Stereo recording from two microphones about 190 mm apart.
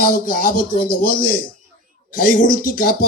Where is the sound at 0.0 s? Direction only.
50° left (ahead or behind).